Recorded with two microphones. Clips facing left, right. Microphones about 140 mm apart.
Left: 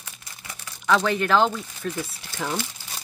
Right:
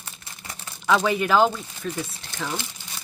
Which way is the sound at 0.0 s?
30° right (ahead or behind).